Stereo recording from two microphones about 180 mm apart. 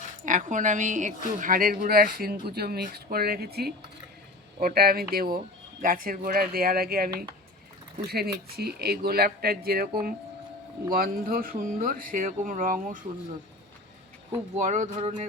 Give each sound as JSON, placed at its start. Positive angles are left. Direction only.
{"t": 0.3, "sound": "speech", "side_deg": -45}
{"t": 14.3, "sound": "speech", "side_deg": -40}